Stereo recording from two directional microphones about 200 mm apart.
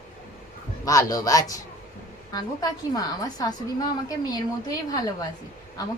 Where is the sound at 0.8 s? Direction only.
15° left (ahead or behind).